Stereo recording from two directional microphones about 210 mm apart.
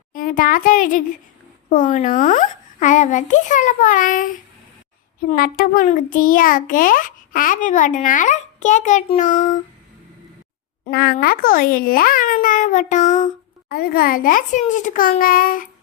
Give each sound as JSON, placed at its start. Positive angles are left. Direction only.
{"t": 0.1, "sound": "a child's voice", "side_deg": 40}
{"t": 5.3, "sound": "a child's voice", "side_deg": 40}
{"t": 10.8, "sound": "a child's voice", "side_deg": 50}